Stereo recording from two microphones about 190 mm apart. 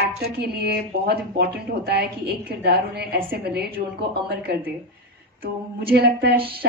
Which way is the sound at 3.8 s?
45° right (ahead or behind).